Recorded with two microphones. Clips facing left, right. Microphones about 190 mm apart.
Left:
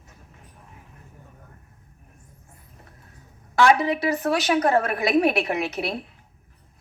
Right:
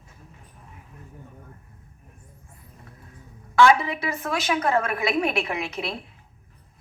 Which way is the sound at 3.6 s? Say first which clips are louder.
Even; 40° left (ahead or behind).